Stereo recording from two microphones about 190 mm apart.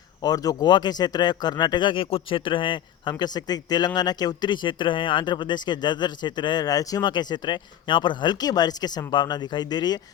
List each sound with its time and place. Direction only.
0.2 s speech: 20° left (ahead or behind)